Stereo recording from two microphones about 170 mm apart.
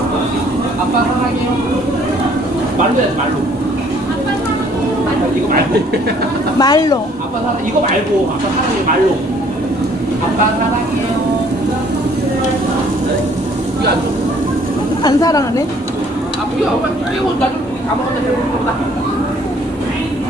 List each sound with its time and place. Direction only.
6.6 s speech: 25° left (ahead or behind)
15.0 s speech: 20° left (ahead or behind)